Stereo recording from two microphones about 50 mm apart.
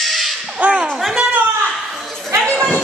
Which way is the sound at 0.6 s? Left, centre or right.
Right.